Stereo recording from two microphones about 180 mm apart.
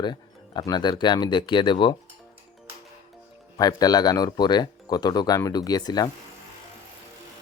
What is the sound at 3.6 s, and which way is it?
Speech, 20° left (ahead or behind).